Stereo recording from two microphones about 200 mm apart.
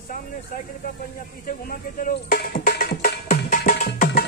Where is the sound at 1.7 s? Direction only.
45° left (ahead or behind).